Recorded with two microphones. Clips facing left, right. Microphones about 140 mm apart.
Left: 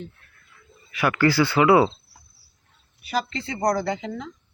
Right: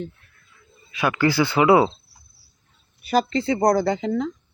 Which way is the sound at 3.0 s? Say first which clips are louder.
Right 7 dB; 45° right (ahead or behind).